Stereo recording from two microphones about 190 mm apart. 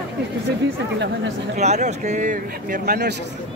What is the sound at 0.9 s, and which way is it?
Speech, 65° right (ahead or behind).